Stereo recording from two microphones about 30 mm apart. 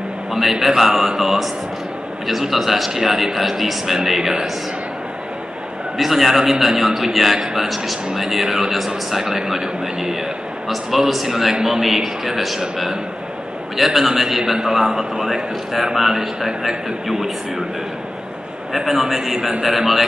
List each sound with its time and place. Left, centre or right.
0.3 s a man's voice: centre
5.9 s a man's voice: centre
10.7 s a man's voice: centre
14.4 s a man's voice: centre
18.7 s a man's voice: centre